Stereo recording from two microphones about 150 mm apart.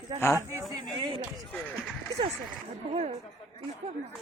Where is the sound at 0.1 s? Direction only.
25° right (ahead or behind).